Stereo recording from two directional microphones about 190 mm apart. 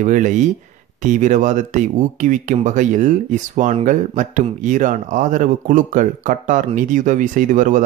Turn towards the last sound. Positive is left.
turn(degrees=-40)  # may be behind; listen again after turning